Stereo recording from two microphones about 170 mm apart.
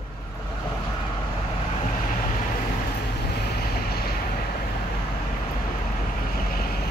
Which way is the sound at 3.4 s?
65° left (ahead or behind).